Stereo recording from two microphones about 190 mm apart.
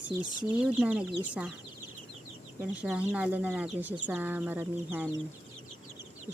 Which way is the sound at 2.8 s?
5° right (ahead or behind).